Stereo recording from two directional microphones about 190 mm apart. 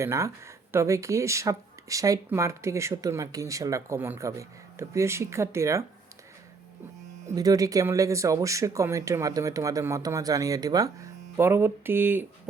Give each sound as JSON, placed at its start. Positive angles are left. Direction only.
{"t": 0.0, "sound": "speech", "side_deg": -15}
{"t": 7.3, "sound": "speech", "side_deg": -20}